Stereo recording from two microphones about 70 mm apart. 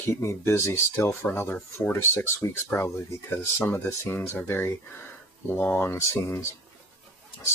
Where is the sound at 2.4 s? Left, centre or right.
Left.